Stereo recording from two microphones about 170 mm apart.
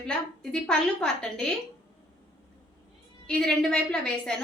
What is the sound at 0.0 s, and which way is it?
A woman's voice, 5° left (ahead or behind).